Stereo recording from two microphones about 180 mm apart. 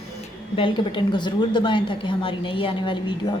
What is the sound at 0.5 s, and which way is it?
A woman's voice, 30° left (ahead or behind).